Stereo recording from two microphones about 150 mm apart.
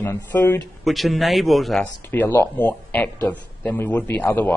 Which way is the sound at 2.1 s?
15° left (ahead or behind).